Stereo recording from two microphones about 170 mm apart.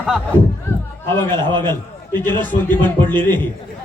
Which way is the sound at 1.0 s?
15° left (ahead or behind).